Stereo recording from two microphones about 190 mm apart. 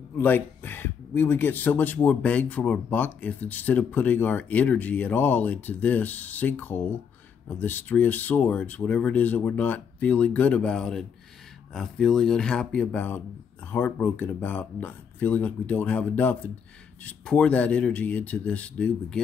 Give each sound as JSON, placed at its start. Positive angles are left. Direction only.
{"t": 0.2, "sound": "speech", "side_deg": 10}